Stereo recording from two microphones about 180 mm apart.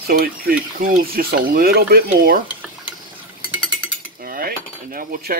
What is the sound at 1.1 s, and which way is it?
Stir, 55° right (ahead or behind).